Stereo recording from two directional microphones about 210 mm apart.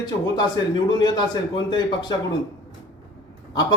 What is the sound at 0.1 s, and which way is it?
A man's voice, 20° left (ahead or behind).